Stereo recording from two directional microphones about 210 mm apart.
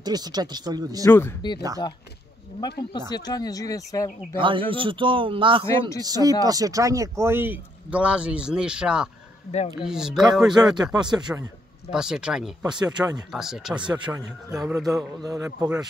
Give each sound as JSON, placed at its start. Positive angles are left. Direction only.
{"t": 0.0, "sound": "a man's voice", "side_deg": -20}
{"t": 1.0, "sound": "speech", "side_deg": 15}
{"t": 2.8, "sound": "speech", "side_deg": 20}
{"t": 4.4, "sound": "a man's voice", "side_deg": -25}
{"t": 9.5, "sound": "speech", "side_deg": 30}
{"t": 9.8, "sound": "speech", "side_deg": 0}
{"t": 10.9, "sound": "a man's voice", "side_deg": -20}
{"t": 11.9, "sound": "speech", "side_deg": -5}
{"t": 12.8, "sound": "a man's voice", "side_deg": -20}
{"t": 13.3, "sound": "speech", "side_deg": 0}
{"t": 13.7, "sound": "a man's voice", "side_deg": -20}
{"t": 14.5, "sound": "speech", "side_deg": 0}
{"t": 14.9, "sound": "a man's voice", "side_deg": -15}